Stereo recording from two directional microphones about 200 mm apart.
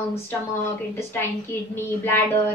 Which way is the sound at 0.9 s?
10° left (ahead or behind).